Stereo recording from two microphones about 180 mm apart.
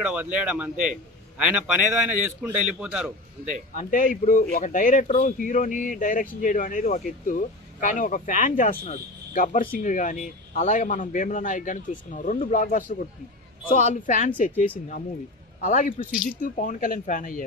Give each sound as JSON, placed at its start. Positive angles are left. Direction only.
{"t": 0.1, "sound": "a man's voice", "side_deg": -10}
{"t": 3.7, "sound": "speech", "side_deg": 50}
{"t": 12.6, "sound": "speech", "side_deg": 50}
{"t": 15.6, "sound": "speech", "side_deg": 45}